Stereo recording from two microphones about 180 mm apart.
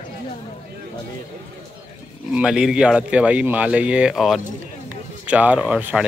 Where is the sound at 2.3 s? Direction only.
5° right (ahead or behind).